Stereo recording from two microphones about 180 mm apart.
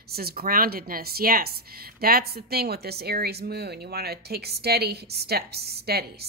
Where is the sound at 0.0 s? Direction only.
60° right (ahead or behind).